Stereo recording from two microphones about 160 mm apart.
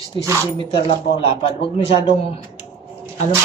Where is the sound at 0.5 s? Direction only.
30° left (ahead or behind).